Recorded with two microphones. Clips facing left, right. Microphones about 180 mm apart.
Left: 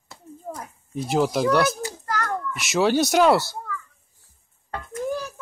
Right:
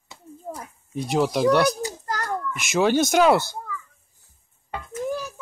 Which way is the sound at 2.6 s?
Centre (ahead or behind).